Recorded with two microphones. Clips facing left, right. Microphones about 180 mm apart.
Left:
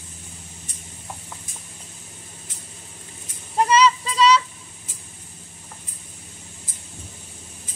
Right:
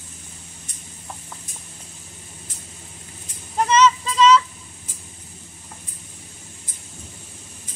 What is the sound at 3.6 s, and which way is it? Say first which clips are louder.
Child singing: right 2 dB; 35° left (ahead or behind).